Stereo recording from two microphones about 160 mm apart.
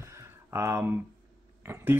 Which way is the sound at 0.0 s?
15° right (ahead or behind).